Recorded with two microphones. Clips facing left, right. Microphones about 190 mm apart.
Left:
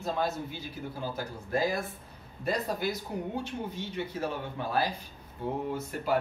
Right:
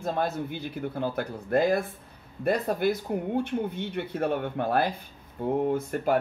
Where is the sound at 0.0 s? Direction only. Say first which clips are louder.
Right 3 dB; 55° right (ahead or behind).